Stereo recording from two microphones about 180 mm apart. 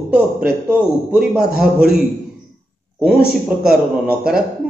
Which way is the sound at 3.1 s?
60° right (ahead or behind).